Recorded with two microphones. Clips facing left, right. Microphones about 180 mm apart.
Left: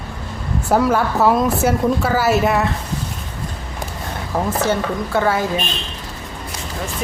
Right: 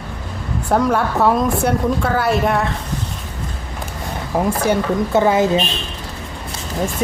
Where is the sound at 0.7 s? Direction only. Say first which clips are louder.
Even; 5° left (ahead or behind).